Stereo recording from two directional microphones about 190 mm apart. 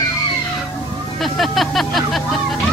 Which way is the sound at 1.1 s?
Centre (ahead or behind).